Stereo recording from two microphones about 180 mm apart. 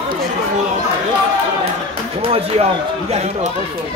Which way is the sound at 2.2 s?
35° right (ahead or behind).